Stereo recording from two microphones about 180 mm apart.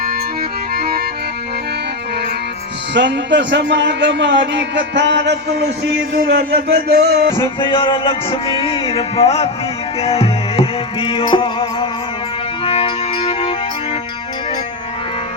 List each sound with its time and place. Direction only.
0.7 s music: 60° right (ahead or behind)
2.9 s a man's voice: 75° right (ahead or behind)
7.3 s music: 25° left (ahead or behind)